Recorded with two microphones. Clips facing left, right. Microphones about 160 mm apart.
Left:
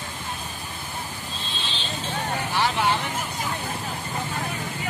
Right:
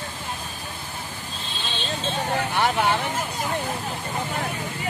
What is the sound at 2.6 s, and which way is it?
Vehicle, 55° right (ahead or behind).